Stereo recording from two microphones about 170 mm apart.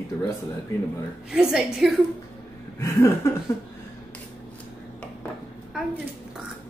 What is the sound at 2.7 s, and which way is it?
Speech, 15° left (ahead or behind).